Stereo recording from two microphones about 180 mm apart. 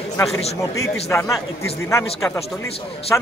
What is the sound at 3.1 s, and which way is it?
Speech, 15° left (ahead or behind).